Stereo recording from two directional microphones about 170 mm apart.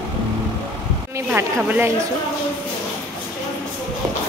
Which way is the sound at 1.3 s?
10° right (ahead or behind).